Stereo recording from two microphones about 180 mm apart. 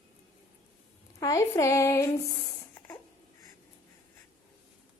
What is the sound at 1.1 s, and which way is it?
Speech, 15° left (ahead or behind).